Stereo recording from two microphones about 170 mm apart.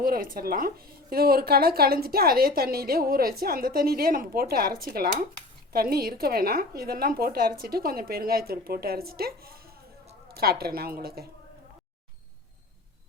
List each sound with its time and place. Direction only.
0.0 s a woman's voice: 55° right (ahead or behind)